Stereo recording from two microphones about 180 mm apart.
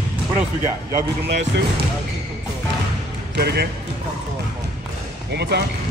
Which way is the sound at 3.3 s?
65° right (ahead or behind).